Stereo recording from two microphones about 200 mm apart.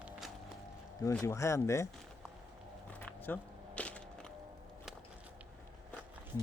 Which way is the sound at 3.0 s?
10° left (ahead or behind).